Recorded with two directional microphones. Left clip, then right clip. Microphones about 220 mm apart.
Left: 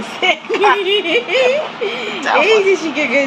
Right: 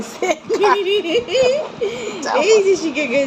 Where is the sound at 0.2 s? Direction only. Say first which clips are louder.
Left 3 dB; 55° right (ahead or behind).